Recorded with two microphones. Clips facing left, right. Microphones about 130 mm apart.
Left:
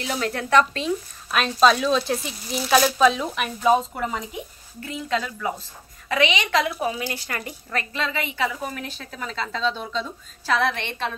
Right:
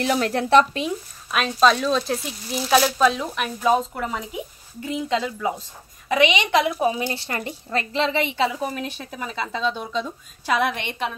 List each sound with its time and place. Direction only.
0.0 s speech: 40° right (ahead or behind)
1.3 s a woman's voice: centre (ahead or behind)